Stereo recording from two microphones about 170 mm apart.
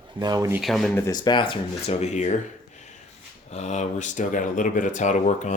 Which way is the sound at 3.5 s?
40° left (ahead or behind).